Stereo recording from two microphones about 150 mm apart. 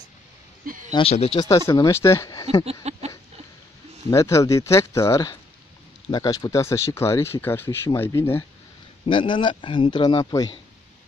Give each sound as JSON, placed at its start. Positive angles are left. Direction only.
{"t": 0.7, "sound": "a sound", "side_deg": -60}
{"t": 0.9, "sound": "speech", "side_deg": 40}
{"t": 1.7, "sound": "speech", "side_deg": 20}
{"t": 2.6, "sound": "a sound", "side_deg": -45}
{"t": 4.1, "sound": "speech", "side_deg": 20}
{"t": 9.0, "sound": "speech", "side_deg": 35}